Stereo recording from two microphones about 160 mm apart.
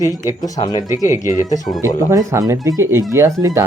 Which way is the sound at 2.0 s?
20° right (ahead or behind).